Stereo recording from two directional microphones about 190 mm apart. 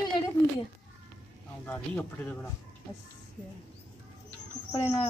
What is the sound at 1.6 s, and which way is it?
Speech, 10° left (ahead or behind).